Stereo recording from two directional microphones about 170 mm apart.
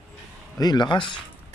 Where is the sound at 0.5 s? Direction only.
25° left (ahead or behind).